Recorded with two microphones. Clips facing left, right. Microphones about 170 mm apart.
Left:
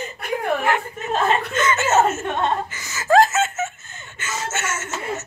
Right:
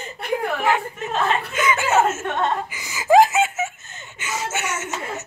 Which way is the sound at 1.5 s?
10° right (ahead or behind).